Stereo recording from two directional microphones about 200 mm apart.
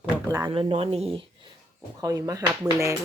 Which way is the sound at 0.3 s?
20° right (ahead or behind).